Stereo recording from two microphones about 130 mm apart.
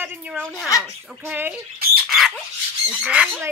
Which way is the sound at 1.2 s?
15° right (ahead or behind).